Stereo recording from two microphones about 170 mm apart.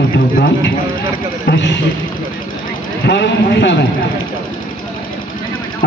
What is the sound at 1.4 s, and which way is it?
Speech, 90° left.